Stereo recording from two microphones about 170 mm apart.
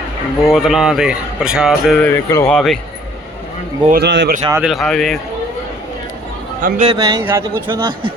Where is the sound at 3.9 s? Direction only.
85° right.